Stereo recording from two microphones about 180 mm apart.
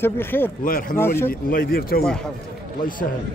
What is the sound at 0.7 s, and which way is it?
Speech, 50° left (ahead or behind).